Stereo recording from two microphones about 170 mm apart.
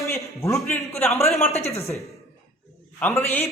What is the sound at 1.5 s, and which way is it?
Speech, 40° left (ahead or behind).